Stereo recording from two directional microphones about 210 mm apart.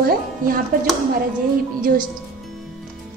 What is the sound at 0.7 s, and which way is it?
Speech, 40° right (ahead or behind).